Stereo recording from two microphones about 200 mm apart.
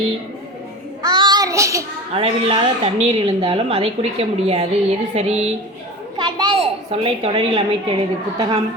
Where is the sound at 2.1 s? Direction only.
30° right (ahead or behind).